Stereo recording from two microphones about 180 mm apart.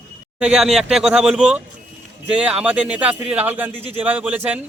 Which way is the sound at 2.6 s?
10° right (ahead or behind).